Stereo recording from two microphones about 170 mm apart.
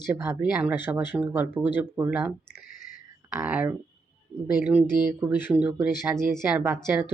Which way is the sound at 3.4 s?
10° right (ahead or behind).